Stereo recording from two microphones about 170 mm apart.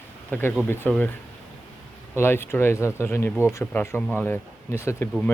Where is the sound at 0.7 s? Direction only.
10° left (ahead or behind).